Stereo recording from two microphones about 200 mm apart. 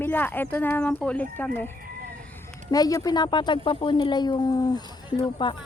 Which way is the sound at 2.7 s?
20° left (ahead or behind).